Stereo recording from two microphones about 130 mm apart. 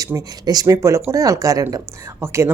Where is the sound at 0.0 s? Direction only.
30° right (ahead or behind).